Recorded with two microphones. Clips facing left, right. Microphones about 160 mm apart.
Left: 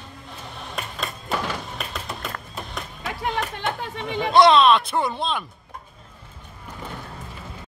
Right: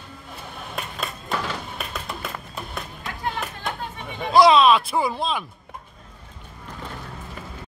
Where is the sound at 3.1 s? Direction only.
75° left (ahead or behind).